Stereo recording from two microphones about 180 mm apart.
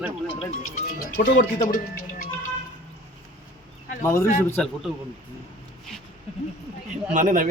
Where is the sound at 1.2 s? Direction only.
45° left (ahead or behind).